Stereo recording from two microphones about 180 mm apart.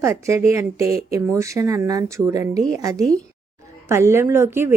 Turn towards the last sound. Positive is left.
turn(degrees=-15)  # may be behind; listen again after turning